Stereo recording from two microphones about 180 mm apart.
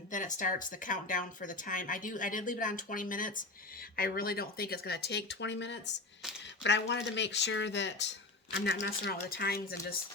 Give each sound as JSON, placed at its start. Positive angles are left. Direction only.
{"t": 0.1, "sound": "speech", "side_deg": 45}